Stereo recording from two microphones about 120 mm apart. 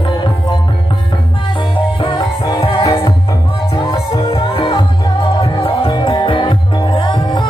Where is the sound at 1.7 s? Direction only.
35° left (ahead or behind).